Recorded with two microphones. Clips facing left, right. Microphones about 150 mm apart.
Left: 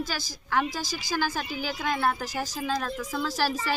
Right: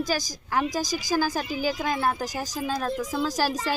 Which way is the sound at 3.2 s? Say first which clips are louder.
Left 1 dB; 40° right (ahead or behind).